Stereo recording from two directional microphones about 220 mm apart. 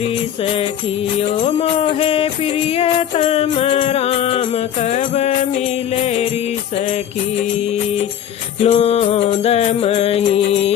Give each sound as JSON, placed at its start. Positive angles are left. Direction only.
{"t": 0.4, "sound": "music", "side_deg": 25}
{"t": 8.6, "sound": "music", "side_deg": 30}